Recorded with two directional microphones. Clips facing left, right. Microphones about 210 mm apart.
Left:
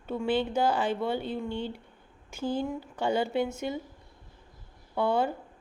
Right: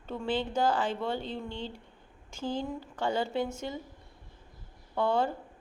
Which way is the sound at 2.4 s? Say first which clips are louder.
Left 3 dB; 10° left (ahead or behind).